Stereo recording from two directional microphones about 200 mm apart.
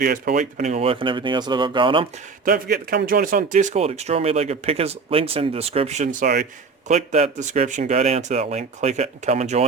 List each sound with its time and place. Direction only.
0.0 s speech: 45° right (ahead or behind); by 2.0 s 25° right (ahead or behind)
2.4 s speech: 50° right (ahead or behind); by 9.6 s 35° right (ahead or behind)